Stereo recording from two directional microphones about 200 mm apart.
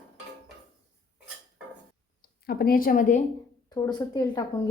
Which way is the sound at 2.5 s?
50° left (ahead or behind).